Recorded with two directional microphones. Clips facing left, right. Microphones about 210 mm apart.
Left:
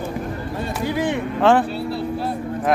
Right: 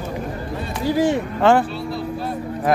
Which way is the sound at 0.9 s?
40° right (ahead or behind).